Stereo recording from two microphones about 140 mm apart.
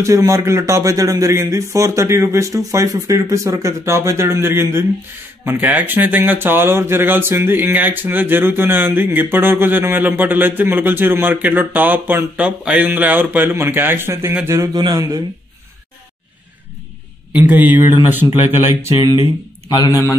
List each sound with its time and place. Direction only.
0.0 s speech: 20° right (ahead or behind)
17.3 s speech: 10° right (ahead or behind)
18.9 s a man's voice: 35° left (ahead or behind)